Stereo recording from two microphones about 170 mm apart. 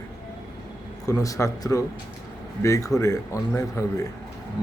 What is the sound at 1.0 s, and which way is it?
Speech, 20° left (ahead or behind).